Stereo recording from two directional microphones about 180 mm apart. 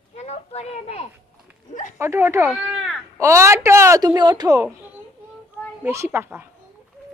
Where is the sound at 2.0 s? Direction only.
15° right (ahead or behind).